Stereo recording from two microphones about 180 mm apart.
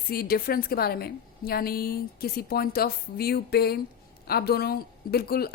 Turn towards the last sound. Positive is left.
turn(degrees=60)  # may be behind; listen again after turning